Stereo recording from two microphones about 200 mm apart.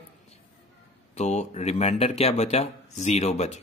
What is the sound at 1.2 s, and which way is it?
Speech, 35° left (ahead or behind).